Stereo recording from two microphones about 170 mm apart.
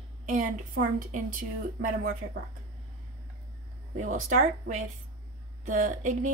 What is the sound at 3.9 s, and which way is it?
A woman's voice, 45° right (ahead or behind).